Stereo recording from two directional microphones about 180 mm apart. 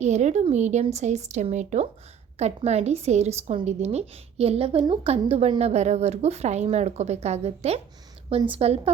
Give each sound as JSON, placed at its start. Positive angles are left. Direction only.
{"t": 0.0, "sound": "a woman's voice", "side_deg": -40}